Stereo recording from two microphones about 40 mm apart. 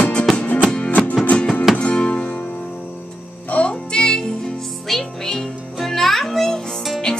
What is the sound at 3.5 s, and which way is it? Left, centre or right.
Music, left.